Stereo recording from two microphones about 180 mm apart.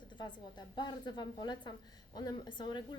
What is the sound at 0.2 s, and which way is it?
A woman's voice, 25° left (ahead or behind).